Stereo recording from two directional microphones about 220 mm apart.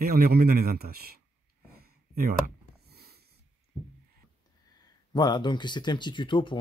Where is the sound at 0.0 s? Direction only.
45° right (ahead or behind).